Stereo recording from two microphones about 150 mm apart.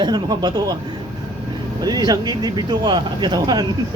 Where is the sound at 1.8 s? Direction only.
25° right (ahead or behind).